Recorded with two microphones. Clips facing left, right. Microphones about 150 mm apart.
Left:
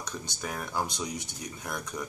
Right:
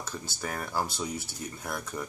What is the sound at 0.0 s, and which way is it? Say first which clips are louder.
Speech: right 1 dB; 5° right (ahead or behind).